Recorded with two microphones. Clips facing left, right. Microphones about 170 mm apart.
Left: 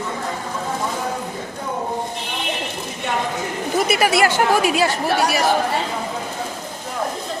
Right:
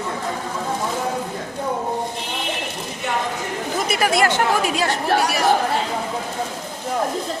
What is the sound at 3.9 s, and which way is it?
Speech, 5° left (ahead or behind).